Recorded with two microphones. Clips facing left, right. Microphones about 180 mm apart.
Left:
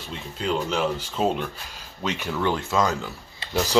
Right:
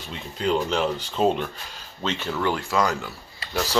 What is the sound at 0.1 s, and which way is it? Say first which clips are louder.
Speech: right 3 dB; centre (ahead or behind).